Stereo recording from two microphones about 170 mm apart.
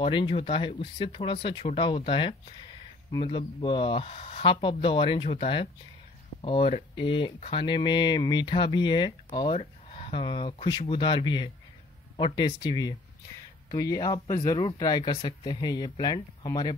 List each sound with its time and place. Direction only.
0.0 s speech: 30° left (ahead or behind)